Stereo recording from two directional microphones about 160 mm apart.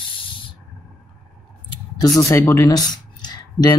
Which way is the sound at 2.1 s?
20° left (ahead or behind).